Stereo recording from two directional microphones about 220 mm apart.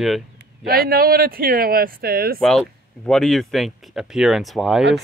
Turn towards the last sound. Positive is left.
turn(degrees=0)  # may be behind; listen again after turning